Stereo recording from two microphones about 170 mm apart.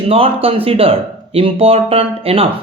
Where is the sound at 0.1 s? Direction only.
35° right (ahead or behind).